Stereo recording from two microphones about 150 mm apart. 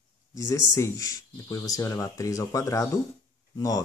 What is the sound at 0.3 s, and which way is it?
Speech, 20° left (ahead or behind).